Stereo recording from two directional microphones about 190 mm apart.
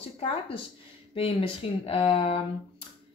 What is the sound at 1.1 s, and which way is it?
A woman's voice, 30° left (ahead or behind).